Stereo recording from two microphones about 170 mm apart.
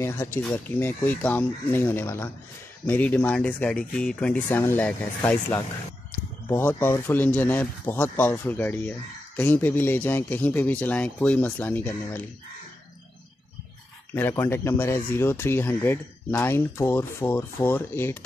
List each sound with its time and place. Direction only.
0.0 s speech: 15° left (ahead or behind)
0.4 s speech: centre (ahead or behind)
14.1 s speech: 15° left (ahead or behind)